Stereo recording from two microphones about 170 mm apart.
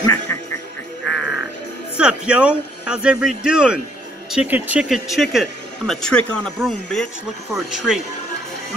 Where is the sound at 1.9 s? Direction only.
5° right (ahead or behind).